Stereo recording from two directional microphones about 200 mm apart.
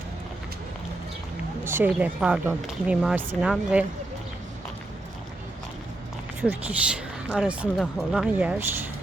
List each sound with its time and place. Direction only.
1.6 s speech: 10° right (ahead or behind)
6.4 s speech: 10° right (ahead or behind)